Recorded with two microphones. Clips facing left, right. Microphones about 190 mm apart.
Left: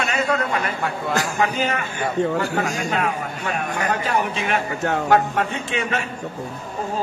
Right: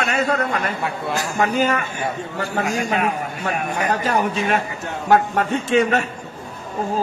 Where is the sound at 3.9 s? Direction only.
40° right (ahead or behind).